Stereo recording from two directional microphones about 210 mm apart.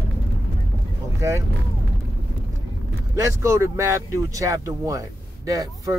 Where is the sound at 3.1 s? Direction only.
15° right (ahead or behind).